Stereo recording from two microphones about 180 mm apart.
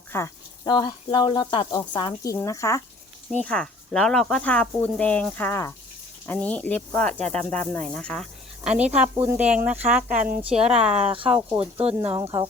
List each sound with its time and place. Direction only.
0.1 s speech: 20° left (ahead or behind)
3.3 s speech: 5° left (ahead or behind)
10.6 s speech: 30° right (ahead or behind)
11.9 s speech: 15° right (ahead or behind)